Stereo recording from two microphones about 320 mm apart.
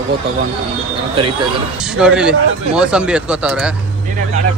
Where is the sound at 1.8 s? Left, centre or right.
Centre.